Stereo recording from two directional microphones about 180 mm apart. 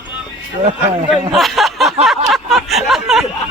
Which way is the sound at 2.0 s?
Centre (ahead or behind).